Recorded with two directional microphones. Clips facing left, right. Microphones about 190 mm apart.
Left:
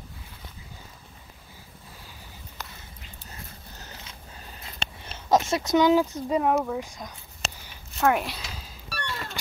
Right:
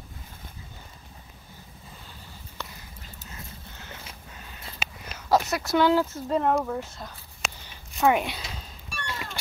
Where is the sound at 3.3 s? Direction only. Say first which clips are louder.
Even; 35° left (ahead or behind).